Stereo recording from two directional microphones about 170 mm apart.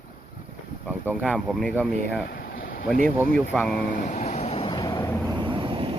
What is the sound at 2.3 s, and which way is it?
Boat, 90° left.